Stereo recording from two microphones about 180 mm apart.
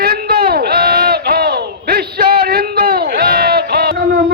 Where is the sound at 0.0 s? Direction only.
60° right (ahead or behind).